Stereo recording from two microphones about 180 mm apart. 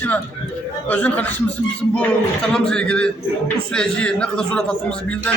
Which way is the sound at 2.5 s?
5° left (ahead or behind).